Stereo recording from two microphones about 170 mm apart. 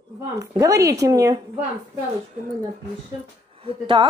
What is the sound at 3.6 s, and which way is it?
Speech, 30° right (ahead or behind).